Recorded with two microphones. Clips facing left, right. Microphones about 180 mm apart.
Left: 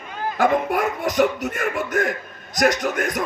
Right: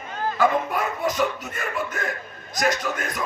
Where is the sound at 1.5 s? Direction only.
50° left (ahead or behind).